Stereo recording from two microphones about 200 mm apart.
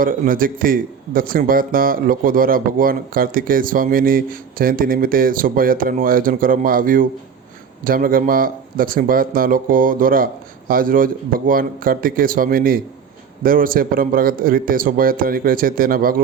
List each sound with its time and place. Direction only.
0.0 s speech: 45° right (ahead or behind)